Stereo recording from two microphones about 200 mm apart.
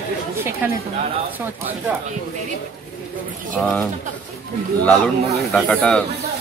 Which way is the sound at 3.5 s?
5° left (ahead or behind).